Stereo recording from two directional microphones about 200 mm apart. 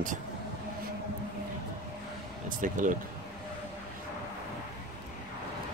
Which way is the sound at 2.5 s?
40° right (ahead or behind).